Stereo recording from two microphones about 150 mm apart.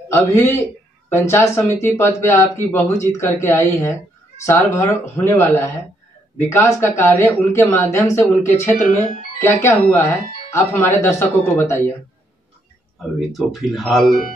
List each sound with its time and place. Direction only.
0.1 s speech: 15° left (ahead or behind)
8.8 s speech: 60° left (ahead or behind)
9.4 s speech: 15° left (ahead or behind)
13.2 s speech: centre (ahead or behind)